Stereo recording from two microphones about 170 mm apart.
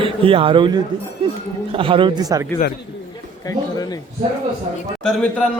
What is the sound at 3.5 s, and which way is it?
Speech, 20° left (ahead or behind).